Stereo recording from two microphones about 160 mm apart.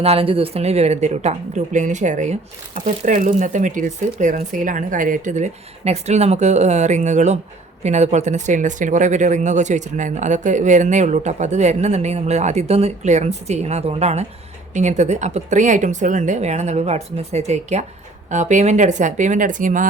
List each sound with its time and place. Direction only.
0.0 s speech: 35° right (ahead or behind); by 19.9 s 55° right (ahead or behind)